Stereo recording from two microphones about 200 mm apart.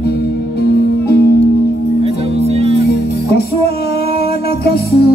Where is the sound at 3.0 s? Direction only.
50° left (ahead or behind).